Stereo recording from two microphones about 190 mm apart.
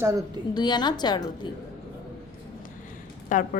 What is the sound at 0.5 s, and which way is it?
Speech, 20° left (ahead or behind).